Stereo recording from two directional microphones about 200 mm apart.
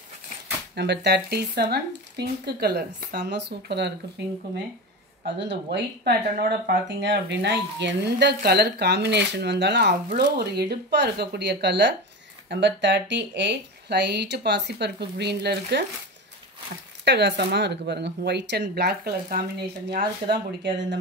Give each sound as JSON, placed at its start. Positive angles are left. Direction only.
{"t": 0.7, "sound": "speech", "side_deg": -55}
{"t": 5.4, "sound": "speech", "side_deg": -60}
{"t": 17.0, "sound": "speech", "side_deg": -55}